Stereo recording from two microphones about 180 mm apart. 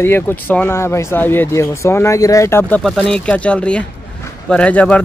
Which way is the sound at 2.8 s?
Centre (ahead or behind).